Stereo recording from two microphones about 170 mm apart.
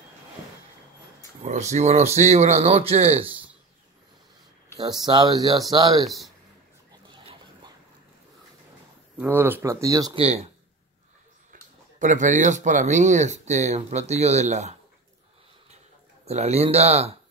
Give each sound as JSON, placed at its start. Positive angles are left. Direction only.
{"t": 1.4, "sound": "speech", "side_deg": -40}
{"t": 3.3, "sound": "a sound", "side_deg": -10}
{"t": 5.0, "sound": "speech", "side_deg": -25}
{"t": 6.0, "sound": "speech", "side_deg": 0}
{"t": 7.1, "sound": "dog", "side_deg": -30}
{"t": 9.2, "sound": "speech", "side_deg": -10}
{"t": 10.1, "sound": "speech", "side_deg": -40}
{"t": 12.0, "sound": "speech", "side_deg": -50}
{"t": 16.3, "sound": "speech", "side_deg": -40}